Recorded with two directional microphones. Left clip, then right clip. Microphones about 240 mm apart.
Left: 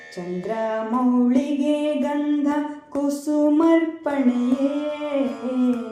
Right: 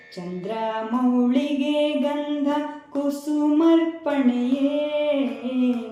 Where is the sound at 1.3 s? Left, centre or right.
Left.